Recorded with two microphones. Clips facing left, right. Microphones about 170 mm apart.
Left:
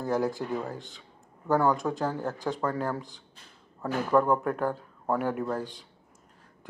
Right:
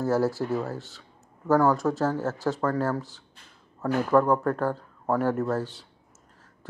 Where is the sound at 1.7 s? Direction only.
20° left (ahead or behind).